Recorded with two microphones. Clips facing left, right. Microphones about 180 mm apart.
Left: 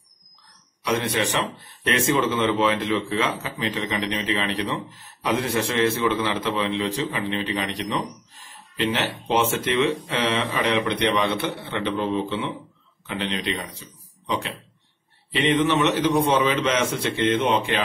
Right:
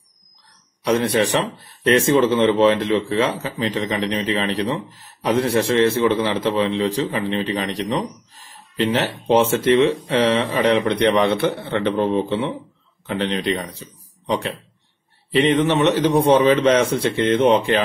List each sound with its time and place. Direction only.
0.8 s speech: 35° right (ahead or behind)